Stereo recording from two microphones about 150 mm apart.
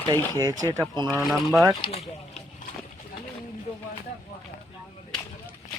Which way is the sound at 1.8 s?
45° left (ahead or behind).